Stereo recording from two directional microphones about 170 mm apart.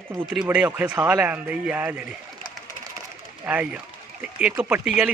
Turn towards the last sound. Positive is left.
turn(degrees=-5)  # may be behind; listen again after turning